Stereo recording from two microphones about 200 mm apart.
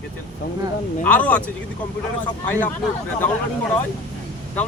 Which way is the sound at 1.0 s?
5° left (ahead or behind).